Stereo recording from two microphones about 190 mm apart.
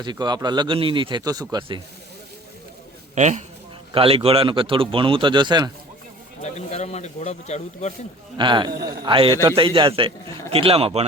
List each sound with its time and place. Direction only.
0.0 s a man's voice: 20° right (ahead or behind)
3.2 s a man's voice: 40° right (ahead or behind); by 5.7 s 25° right (ahead or behind)
6.4 s speech: 35° left (ahead or behind)
8.4 s a man's voice: 25° right (ahead or behind)